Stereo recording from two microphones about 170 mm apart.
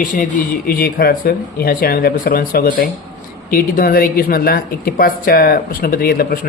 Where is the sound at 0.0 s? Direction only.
55° left (ahead or behind).